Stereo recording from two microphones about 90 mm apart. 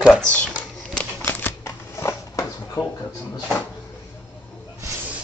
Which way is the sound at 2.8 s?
45° left (ahead or behind).